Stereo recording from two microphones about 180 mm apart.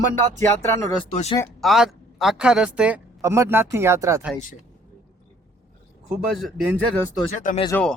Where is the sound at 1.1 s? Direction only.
40° left (ahead or behind).